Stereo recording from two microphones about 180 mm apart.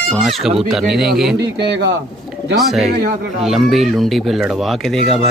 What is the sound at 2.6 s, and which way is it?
A man's voice, centre (ahead or behind).